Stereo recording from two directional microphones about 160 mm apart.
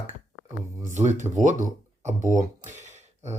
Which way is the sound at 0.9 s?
45° right (ahead or behind).